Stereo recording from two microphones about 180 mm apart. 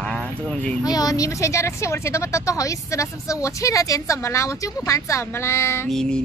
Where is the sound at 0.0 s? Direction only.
5° left (ahead or behind).